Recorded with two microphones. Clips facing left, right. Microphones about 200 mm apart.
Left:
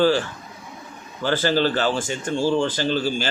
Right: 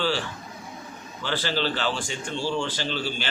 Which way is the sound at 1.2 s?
45° left (ahead or behind).